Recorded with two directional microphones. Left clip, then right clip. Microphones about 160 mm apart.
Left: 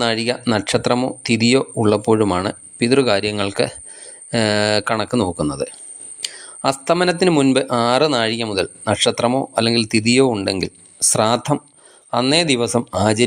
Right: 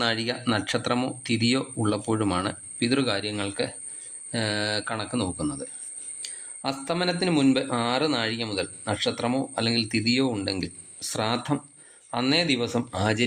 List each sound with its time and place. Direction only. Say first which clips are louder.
0.0 s speech: left 7 dB; 35° left (ahead or behind)